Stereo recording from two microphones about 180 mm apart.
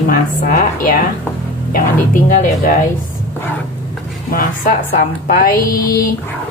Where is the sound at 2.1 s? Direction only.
45° left (ahead or behind).